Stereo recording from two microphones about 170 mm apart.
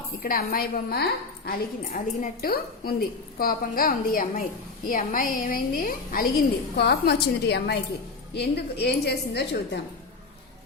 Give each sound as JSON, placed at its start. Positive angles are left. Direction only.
{"t": 0.2, "sound": "a woman's voice", "side_deg": 60}
{"t": 6.7, "sound": "a woman's voice", "side_deg": 75}